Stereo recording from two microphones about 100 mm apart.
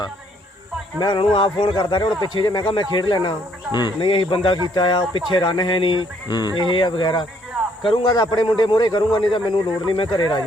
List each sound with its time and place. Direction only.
0.9 s speech: 50° left (ahead or behind)
4.7 s speech: 50° left (ahead or behind)
6.7 s speech: 55° left (ahead or behind)